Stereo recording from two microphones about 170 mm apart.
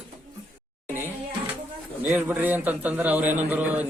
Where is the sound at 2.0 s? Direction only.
10° right (ahead or behind).